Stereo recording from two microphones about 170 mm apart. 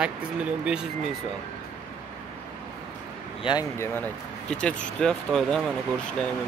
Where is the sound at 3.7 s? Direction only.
10° left (ahead or behind).